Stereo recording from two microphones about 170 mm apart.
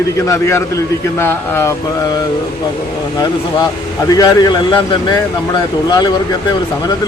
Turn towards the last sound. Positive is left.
turn(degrees=25)  # may be behind; listen again after turning